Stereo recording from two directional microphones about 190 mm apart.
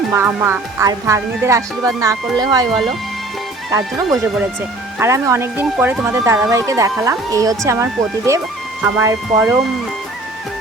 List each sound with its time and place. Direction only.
0.1 s speech: 10° right (ahead or behind)
3.7 s speech: 20° right (ahead or behind)